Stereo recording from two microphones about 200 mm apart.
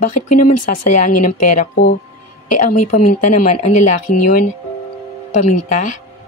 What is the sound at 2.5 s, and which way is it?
A woman's voice, 40° left (ahead or behind).